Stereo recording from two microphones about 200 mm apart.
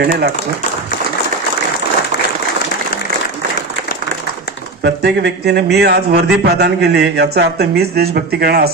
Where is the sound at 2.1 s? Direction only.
50° left (ahead or behind).